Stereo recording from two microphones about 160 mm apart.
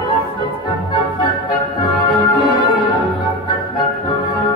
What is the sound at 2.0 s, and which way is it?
Music, 30° left (ahead or behind).